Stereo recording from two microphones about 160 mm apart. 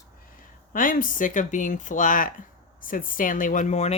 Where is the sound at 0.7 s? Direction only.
60° left (ahead or behind).